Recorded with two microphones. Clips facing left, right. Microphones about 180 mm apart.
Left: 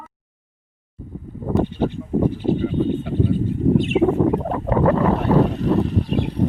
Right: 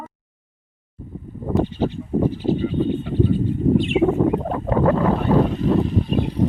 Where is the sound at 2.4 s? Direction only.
55° left (ahead or behind).